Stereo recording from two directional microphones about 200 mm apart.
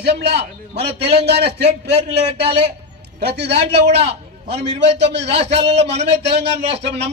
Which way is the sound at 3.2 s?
55° right (ahead or behind).